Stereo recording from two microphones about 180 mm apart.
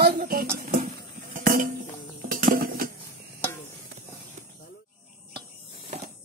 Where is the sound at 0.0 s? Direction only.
60° right (ahead or behind).